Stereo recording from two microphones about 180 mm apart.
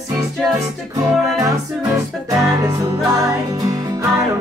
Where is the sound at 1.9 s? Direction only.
15° right (ahead or behind).